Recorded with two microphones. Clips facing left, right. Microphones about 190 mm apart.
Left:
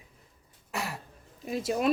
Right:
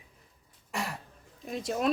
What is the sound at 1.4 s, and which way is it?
Speech, 5° left (ahead or behind).